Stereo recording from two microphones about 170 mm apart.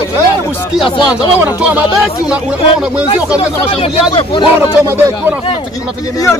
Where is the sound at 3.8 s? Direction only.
30° left (ahead or behind).